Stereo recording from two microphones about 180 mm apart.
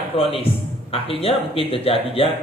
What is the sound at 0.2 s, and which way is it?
A man's voice, 30° left (ahead or behind).